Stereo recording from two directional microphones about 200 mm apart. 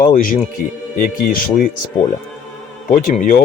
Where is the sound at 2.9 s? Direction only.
45° left (ahead or behind).